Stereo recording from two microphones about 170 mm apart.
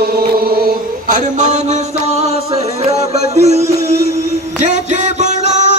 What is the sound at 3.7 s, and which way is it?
Music, 65° left (ahead or behind).